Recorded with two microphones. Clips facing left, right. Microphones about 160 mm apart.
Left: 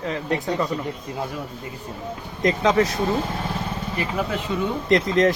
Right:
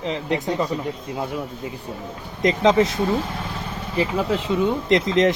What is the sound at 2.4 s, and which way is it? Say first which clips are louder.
Speech: right 2 dB; 20° right (ahead or behind).